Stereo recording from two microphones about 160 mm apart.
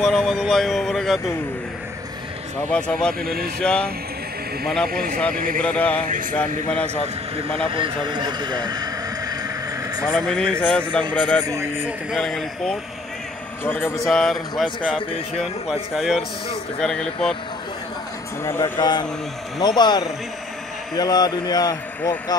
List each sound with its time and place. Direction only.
0.0 s speech: centre (ahead or behind)
2.7 s a man's voice: 5° left (ahead or behind)
3.2 s speech: 65° right (ahead or behind)
3.6 s speech: 5° left (ahead or behind)
4.9 s speech: 65° right (ahead or behind)
5.6 s a man's voice: 10° left (ahead or behind)
7.4 s speech: 35° right (ahead or behind)
10.0 s a man's voice: centre (ahead or behind)
11.4 s speech: 15° right (ahead or behind)
12.1 s a man's voice: centre (ahead or behind)
13.9 s speech: centre (ahead or behind)
15.9 s speech: centre (ahead or behind)
18.4 s speech: 15° left (ahead or behind)